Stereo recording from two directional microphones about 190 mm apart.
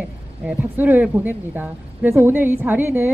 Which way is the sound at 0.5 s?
10° right (ahead or behind).